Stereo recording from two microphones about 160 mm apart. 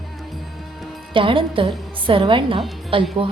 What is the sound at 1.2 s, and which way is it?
A woman's voice, 30° right (ahead or behind).